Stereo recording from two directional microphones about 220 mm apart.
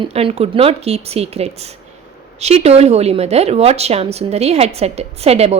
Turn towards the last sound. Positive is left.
turn(degrees=-30)  # may be behind; listen again after turning